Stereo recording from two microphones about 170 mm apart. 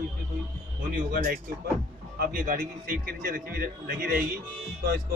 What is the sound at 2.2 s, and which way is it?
Speech, 55° right (ahead or behind).